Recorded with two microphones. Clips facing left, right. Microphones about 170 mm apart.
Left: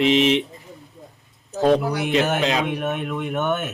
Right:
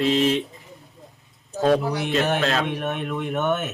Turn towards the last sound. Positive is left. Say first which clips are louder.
# even
turn(degrees=0)  # may be behind; listen again after turning